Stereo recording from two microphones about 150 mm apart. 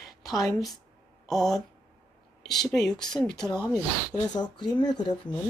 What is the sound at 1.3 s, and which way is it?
Speech, centre (ahead or behind).